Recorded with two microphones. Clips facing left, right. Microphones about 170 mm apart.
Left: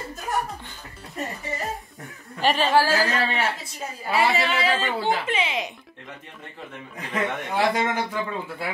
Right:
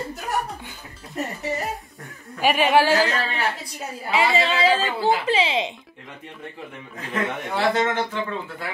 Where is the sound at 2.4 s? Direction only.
15° right (ahead or behind).